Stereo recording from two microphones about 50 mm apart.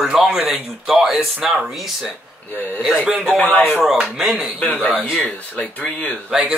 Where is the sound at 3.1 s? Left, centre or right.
Centre.